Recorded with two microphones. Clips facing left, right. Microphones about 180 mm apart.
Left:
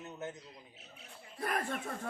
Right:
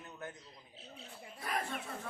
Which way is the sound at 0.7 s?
30° right (ahead or behind).